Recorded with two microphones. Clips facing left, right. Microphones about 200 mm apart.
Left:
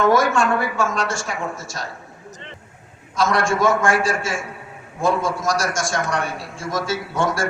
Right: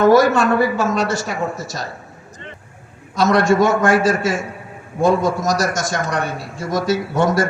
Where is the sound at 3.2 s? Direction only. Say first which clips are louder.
Right 5 dB; 40° right (ahead or behind).